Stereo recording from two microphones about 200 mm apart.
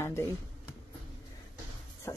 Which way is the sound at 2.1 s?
15° left (ahead or behind).